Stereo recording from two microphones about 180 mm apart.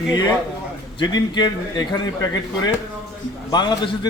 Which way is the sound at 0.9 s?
25° left (ahead or behind).